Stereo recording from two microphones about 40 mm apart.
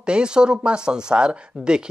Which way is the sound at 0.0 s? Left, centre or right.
Right.